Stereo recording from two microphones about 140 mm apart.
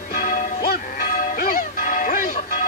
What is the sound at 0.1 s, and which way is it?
Music, 75° left (ahead or behind).